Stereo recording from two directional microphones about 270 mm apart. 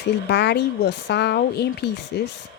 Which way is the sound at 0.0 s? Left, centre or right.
Left.